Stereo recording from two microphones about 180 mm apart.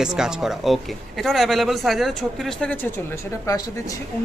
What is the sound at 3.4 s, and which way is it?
Speech, 20° left (ahead or behind).